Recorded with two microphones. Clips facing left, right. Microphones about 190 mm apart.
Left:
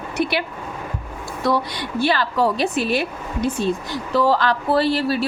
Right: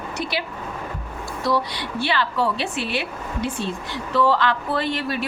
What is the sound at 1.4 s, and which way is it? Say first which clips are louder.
A woman's voice: left 2 dB; 45° left (ahead or behind).